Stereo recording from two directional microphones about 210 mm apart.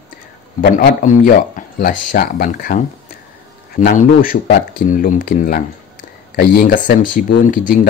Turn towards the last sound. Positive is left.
turn(degrees=40)  # may be behind; listen again after turning